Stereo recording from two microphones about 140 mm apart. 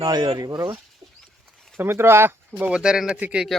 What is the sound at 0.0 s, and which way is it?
Speech, 30° right (ahead or behind).